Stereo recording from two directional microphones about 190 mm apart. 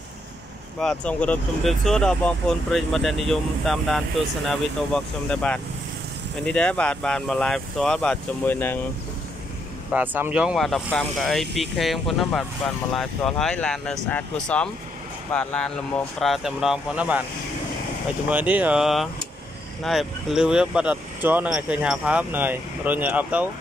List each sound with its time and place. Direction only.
0.7 s speech: 5° left (ahead or behind)
9.9 s speech: 10° right (ahead or behind)
18.3 s speech: 10° right (ahead or behind)